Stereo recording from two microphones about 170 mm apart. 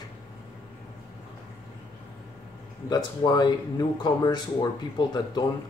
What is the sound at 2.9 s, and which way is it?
Speech, 25° left (ahead or behind).